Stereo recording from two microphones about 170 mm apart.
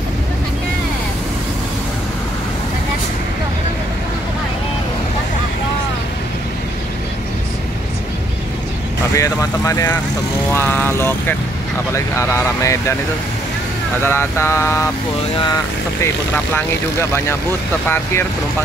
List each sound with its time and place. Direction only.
9.1 s speech: 20° left (ahead or behind)
10.5 s mantra: 10° left (ahead or behind)
14.0 s mantra: 15° left (ahead or behind)
17.8 s mantra: 15° left (ahead or behind)